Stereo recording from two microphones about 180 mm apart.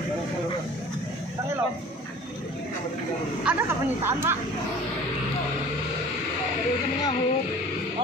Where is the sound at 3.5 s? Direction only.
10° right (ahead or behind).